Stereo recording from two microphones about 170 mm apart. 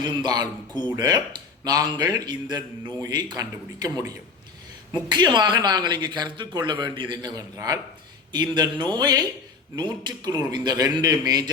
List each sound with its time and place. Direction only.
0.0 s speech: 25° right (ahead or behind)